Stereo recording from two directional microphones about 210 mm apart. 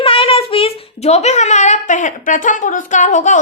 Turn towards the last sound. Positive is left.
turn(degrees=35)  # may be behind; listen again after turning